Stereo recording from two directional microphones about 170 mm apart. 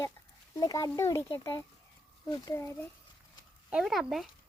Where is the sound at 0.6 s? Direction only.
20° left (ahead or behind).